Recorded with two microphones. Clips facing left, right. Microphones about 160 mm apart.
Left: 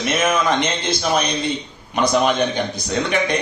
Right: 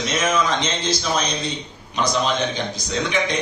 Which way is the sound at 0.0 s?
55° left (ahead or behind).